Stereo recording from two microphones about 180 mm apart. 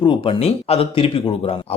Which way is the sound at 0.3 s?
35° left (ahead or behind).